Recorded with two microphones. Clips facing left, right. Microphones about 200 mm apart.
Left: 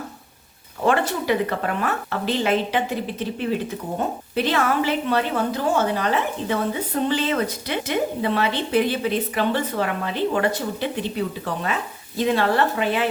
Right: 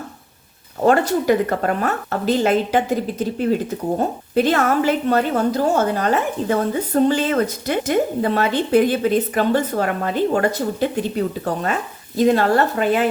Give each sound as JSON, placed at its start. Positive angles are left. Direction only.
{"t": 0.9, "sound": "a woman's voice", "side_deg": -40}